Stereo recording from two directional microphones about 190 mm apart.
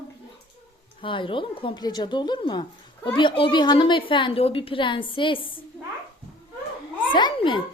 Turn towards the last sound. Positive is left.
turn(degrees=25)  # may be behind; listen again after turning